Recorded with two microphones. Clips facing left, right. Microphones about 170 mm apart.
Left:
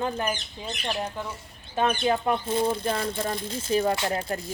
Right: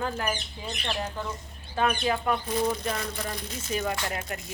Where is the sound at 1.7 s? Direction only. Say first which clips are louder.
Left 2 dB; 25° left (ahead or behind).